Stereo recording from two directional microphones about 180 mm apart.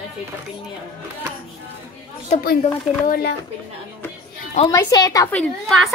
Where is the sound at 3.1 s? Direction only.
65° left (ahead or behind).